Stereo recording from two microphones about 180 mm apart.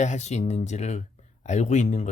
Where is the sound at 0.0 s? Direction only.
40° left (ahead or behind).